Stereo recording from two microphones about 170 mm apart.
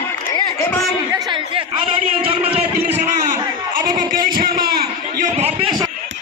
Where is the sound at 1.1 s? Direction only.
25° right (ahead or behind); by 3.3 s 40° right (ahead or behind).